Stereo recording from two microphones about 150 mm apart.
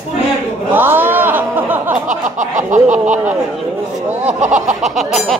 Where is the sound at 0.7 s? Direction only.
15° right (ahead or behind).